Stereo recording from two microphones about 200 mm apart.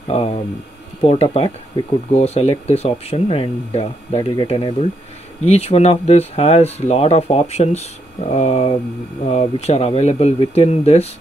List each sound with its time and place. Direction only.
0.1 s speech: 30° left (ahead or behind)